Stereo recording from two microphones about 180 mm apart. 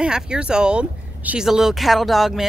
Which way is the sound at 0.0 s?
5° right (ahead or behind).